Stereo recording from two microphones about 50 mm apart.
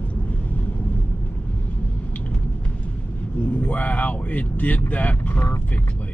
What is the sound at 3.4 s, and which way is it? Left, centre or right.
Speech, left.